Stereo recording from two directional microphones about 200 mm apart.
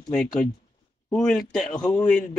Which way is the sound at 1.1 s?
5° left (ahead or behind).